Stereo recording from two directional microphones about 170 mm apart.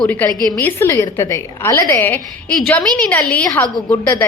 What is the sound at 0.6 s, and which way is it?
A woman's voice, 10° left (ahead or behind).